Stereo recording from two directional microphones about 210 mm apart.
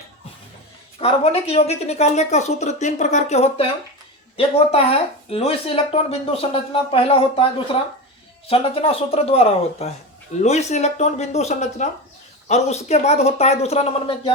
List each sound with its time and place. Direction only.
0.9 s speech: 25° left (ahead or behind)